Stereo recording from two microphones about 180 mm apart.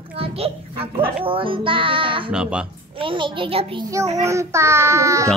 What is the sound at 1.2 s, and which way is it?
Child singing, 30° right (ahead or behind).